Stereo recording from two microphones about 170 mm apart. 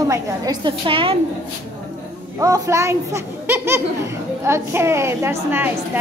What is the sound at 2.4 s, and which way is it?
Speech, 20° right (ahead or behind).